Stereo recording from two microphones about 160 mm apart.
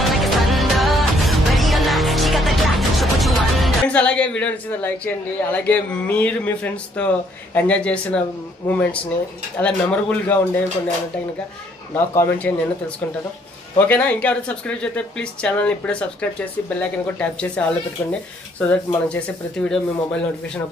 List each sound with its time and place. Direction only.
0.0 s music: centre (ahead or behind)
7.5 s speech: 10° left (ahead or behind)
11.9 s speech: 15° left (ahead or behind)
13.7 s speech: 10° left (ahead or behind)